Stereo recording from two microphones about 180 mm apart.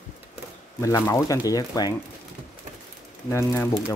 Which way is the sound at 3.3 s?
15° left (ahead or behind).